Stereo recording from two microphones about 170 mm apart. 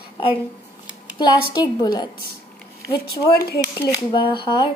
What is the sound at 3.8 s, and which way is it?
Speech, 25° left (ahead or behind).